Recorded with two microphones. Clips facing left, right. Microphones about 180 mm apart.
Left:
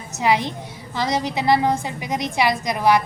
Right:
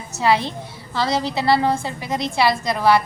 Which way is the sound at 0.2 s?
15° left (ahead or behind).